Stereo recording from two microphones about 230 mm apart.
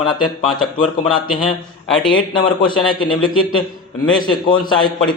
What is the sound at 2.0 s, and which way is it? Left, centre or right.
A man's voice, left.